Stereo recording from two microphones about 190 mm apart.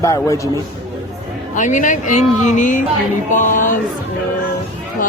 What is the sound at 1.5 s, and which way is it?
Speech, 40° left (ahead or behind).